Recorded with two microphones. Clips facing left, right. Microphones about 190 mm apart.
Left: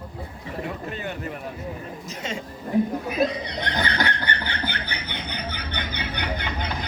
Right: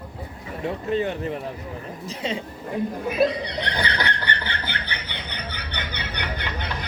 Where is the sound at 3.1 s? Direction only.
45° left (ahead or behind).